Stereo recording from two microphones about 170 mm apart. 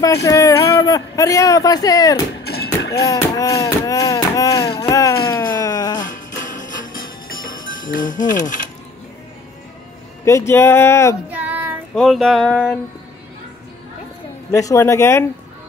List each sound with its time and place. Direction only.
0.0 s a man's voice: 20° left (ahead or behind)
2.4 s music: 70° left (ahead or behind)
3.1 s chop: 20° left (ahead or behind)
5.3 s a sound: 20° left (ahead or behind)
5.9 s music: 50° left (ahead or behind)
7.4 s speech: 50° left (ahead or behind)
10.2 s speech: 15° left (ahead or behind)
11.2 s child singing: 10° right (ahead or behind)
11.9 s a sound: centre (ahead or behind)
14.5 s speech: 20° left (ahead or behind)